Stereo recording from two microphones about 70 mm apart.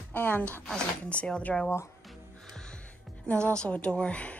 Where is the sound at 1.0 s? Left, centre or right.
Centre.